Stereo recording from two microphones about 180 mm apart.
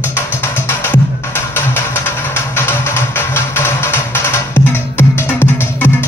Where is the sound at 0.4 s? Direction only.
10° left (ahead or behind).